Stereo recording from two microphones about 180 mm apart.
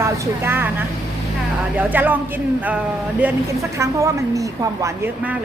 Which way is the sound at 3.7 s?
15° right (ahead or behind).